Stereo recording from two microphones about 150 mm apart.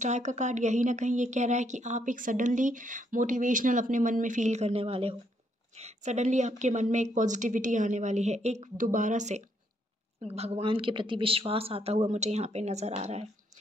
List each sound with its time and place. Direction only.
0.0 s a woman's voice: 50° right (ahead or behind)
10.2 s a woman's voice: 45° right (ahead or behind)